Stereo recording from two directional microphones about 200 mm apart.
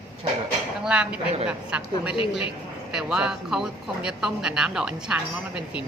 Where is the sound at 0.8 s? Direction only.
5° right (ahead or behind).